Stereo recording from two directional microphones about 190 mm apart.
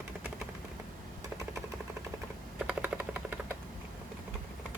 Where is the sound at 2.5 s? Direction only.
5° right (ahead or behind).